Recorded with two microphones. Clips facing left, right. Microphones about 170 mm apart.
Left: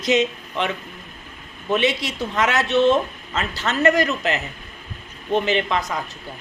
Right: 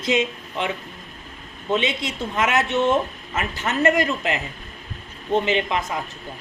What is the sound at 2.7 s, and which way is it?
Speech, 90° left.